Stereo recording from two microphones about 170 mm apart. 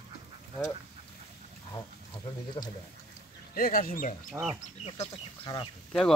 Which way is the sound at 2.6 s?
30° left (ahead or behind).